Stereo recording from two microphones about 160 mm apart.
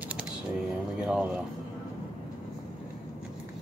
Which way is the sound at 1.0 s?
5° right (ahead or behind).